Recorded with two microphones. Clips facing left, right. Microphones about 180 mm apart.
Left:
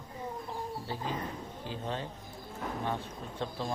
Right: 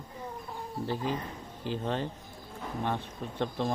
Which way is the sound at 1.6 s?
65° right (ahead or behind).